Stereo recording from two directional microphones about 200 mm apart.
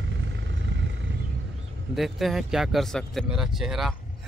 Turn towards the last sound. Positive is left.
turn(degrees=0)  # may be behind; listen again after turning